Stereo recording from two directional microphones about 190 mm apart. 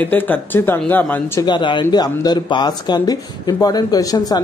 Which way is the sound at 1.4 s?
25° left (ahead or behind).